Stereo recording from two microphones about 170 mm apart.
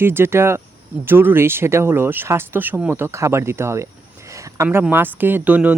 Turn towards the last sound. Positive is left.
turn(degrees=-10)  # may be behind; listen again after turning